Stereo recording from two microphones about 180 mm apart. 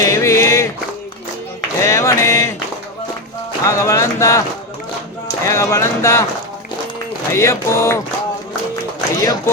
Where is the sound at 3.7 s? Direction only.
20° left (ahead or behind).